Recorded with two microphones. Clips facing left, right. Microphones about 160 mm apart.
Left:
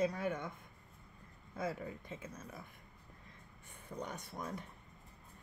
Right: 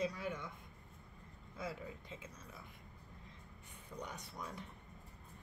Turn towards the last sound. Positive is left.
turn(degrees=45)  # may be behind; listen again after turning